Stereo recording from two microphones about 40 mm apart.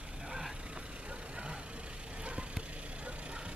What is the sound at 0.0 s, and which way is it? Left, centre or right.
Vehicle, right.